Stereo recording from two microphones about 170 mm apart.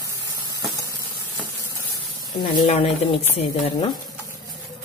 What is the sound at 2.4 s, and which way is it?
Speech, 25° left (ahead or behind).